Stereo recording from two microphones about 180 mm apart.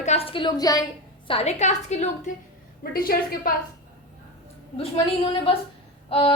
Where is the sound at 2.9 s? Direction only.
55° left (ahead or behind).